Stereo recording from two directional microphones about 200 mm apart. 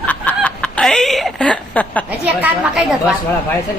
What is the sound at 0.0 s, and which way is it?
Snicker, 5° left (ahead or behind).